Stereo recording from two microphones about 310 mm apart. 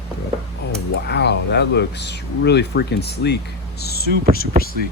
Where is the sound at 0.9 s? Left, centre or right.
Left.